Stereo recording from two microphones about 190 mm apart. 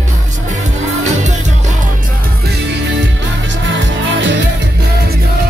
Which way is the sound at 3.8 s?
70° right (ahead or behind).